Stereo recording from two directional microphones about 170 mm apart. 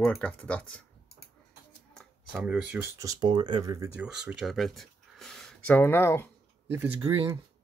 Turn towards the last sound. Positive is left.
turn(degrees=-35)  # may be behind; listen again after turning